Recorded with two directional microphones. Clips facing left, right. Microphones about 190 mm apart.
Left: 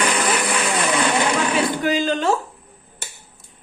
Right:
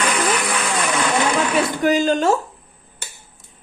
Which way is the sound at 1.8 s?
45° right (ahead or behind).